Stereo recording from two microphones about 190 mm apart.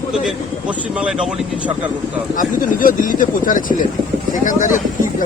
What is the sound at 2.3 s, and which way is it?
Speech, 45° left (ahead or behind).